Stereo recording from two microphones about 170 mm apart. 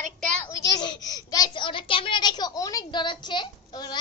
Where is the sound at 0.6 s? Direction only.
25° left (ahead or behind).